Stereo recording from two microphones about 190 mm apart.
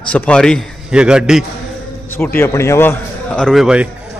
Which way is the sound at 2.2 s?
10° left (ahead or behind).